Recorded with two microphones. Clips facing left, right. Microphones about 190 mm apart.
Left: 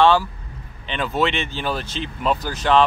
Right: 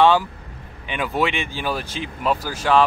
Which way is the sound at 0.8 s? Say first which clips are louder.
Left 1 dB; 10° right (ahead or behind).